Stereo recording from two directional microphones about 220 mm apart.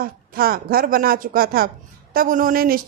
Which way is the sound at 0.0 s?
40° right (ahead or behind).